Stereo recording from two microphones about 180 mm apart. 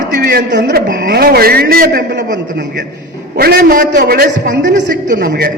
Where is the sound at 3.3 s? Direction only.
55° right (ahead or behind).